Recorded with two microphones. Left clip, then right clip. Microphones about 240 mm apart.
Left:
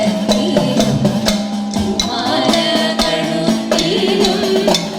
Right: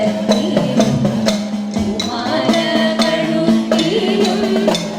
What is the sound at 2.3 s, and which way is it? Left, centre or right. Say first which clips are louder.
Music: left 1 dB; left.